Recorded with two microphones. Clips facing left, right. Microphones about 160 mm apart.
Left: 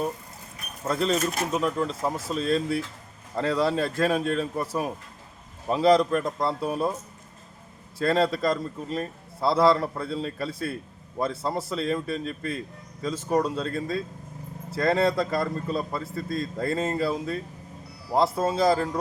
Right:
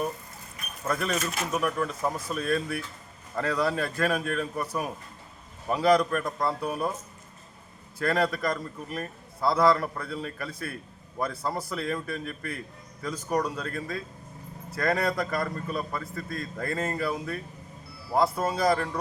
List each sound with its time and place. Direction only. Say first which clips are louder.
0.9 s a man's voice: left 4 dB; 25° left (ahead or behind)
7.9 s a man's voice: left 3 dB; 25° left (ahead or behind)